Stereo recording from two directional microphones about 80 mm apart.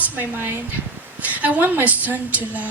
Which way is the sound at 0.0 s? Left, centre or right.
Right.